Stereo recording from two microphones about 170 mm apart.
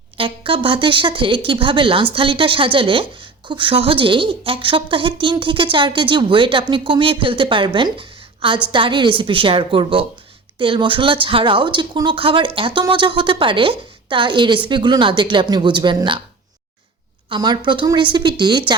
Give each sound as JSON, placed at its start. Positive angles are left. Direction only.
{"t": 0.2, "sound": "a woman's voice", "side_deg": -30}
{"t": 17.2, "sound": "a woman's voice", "side_deg": -25}